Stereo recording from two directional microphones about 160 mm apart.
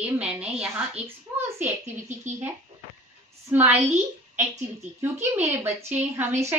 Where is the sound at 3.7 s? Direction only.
15° right (ahead or behind).